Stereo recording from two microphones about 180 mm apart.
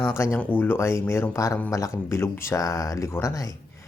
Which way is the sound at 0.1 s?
15° left (ahead or behind).